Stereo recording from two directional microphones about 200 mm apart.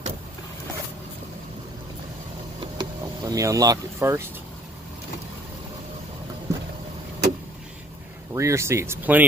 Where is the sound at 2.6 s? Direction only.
20° right (ahead or behind).